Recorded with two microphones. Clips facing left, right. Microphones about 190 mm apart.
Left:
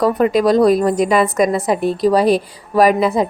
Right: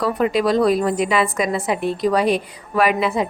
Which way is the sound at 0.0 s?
45° left (ahead or behind).